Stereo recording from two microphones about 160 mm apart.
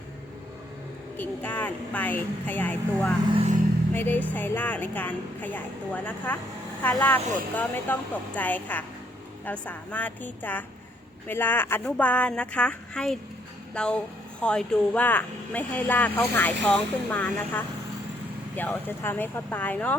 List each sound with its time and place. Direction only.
1.1 s speech: 10° left (ahead or behind)
3.3 s speech: 45° right (ahead or behind)
3.9 s speech: 10° left (ahead or behind)